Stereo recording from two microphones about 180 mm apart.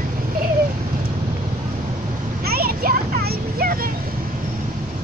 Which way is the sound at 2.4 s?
55° right (ahead or behind).